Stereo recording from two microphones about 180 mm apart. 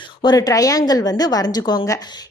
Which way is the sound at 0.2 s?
20° left (ahead or behind).